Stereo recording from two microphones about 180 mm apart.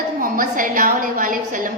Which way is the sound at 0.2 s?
50° right (ahead or behind).